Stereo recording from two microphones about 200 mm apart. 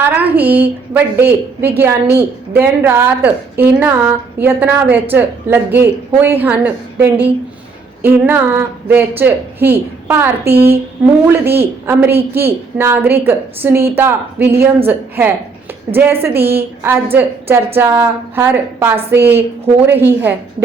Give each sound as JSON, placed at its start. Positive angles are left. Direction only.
{"t": 0.0, "sound": "a woman's voice", "side_deg": -10}
{"t": 16.4, "sound": "a woman's voice", "side_deg": -50}
{"t": 16.8, "sound": "a woman's voice", "side_deg": -10}